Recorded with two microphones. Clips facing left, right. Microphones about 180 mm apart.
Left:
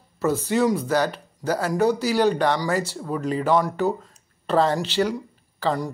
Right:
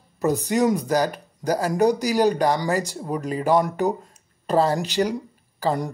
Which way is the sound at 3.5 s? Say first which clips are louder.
Right 3 dB; 15° right (ahead or behind).